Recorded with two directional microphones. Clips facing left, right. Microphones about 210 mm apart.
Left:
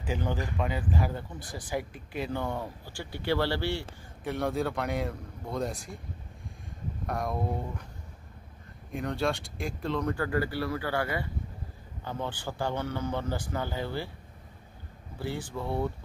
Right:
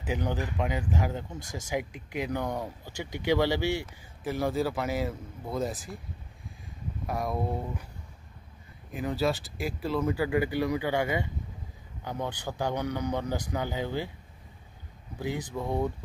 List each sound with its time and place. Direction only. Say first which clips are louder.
0.0 s a man's voice: right 1 dB; 15° right (ahead or behind)
4.2 s speech: right 1 dB; centre (ahead or behind)
7.1 s speech: right 1 dB; centre (ahead or behind)
8.9 s speech: right 2 dB; 5° right (ahead or behind)
10.3 s a man's voice: right 3 dB; 15° right (ahead or behind)
15.1 s a man's voice: right 2 dB; 15° right (ahead or behind)